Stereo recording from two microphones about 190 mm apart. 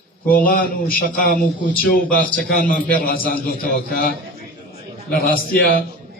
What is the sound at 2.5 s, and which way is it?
A man's voice, 50° left (ahead or behind).